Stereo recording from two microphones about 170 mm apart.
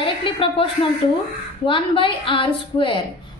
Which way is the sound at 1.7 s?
30° left (ahead or behind).